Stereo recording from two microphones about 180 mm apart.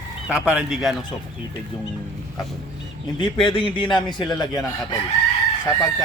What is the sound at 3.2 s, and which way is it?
Speech, 25° left (ahead or behind).